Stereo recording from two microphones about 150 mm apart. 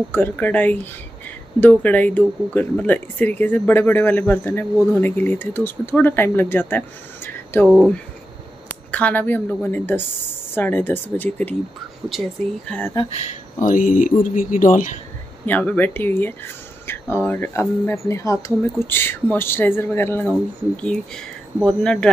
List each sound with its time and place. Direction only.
0.1 s speech: 10° left (ahead or behind)
7.6 s speech: 5° right (ahead or behind)
8.6 s speech: 10° left (ahead or behind)
12.6 s speech: 10° left (ahead or behind)
13.1 s speech: 50° left (ahead or behind)
15.4 s speech: 10° left (ahead or behind)